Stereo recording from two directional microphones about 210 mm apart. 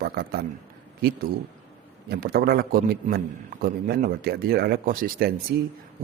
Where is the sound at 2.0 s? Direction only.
45° right (ahead or behind).